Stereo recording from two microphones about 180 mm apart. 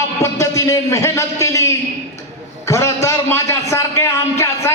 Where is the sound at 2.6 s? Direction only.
15° left (ahead or behind).